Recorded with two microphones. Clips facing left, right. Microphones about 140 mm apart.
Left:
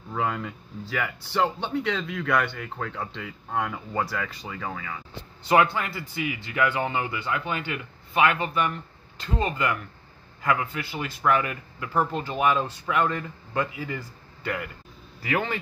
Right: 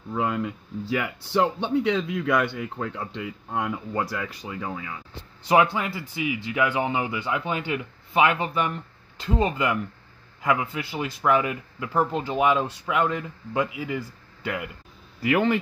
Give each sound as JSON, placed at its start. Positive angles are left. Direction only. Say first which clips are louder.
{"t": 0.1, "sound": "speech", "louder": "right 2 dB", "side_deg": -10}